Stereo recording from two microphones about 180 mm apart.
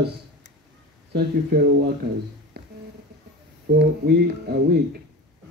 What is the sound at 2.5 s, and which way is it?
Music, 65° right (ahead or behind).